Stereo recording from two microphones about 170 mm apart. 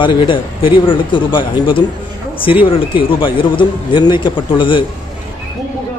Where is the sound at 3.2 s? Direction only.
30° left (ahead or behind).